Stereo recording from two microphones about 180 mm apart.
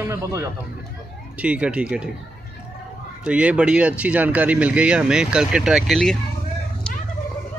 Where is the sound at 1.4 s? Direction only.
5° right (ahead or behind).